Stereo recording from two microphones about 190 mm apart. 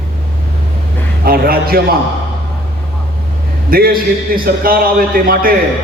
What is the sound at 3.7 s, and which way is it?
A man's voice, 50° right (ahead or behind).